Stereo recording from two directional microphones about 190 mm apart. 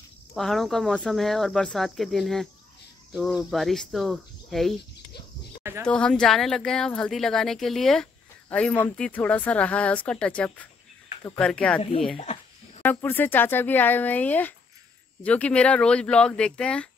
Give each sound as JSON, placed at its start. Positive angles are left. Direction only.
{"t": 0.3, "sound": "speech", "side_deg": 0}
{"t": 5.6, "sound": "speech", "side_deg": -15}
{"t": 5.9, "sound": "speech", "side_deg": 5}
{"t": 12.2, "sound": "a sound", "side_deg": 35}
{"t": 12.8, "sound": "speech", "side_deg": 10}